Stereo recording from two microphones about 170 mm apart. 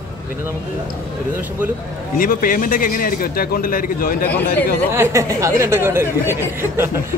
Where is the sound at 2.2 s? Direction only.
55° left (ahead or behind).